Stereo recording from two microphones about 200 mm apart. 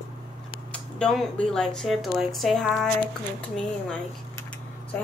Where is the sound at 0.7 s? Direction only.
5° left (ahead or behind).